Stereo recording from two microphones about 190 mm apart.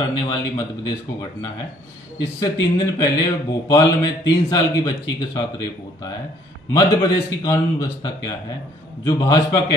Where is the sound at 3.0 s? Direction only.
20° left (ahead or behind).